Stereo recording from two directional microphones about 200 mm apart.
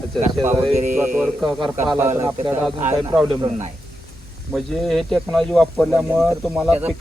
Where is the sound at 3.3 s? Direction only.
20° right (ahead or behind).